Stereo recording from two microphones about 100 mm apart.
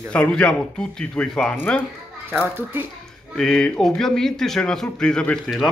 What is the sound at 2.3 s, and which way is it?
Speech, 20° right (ahead or behind).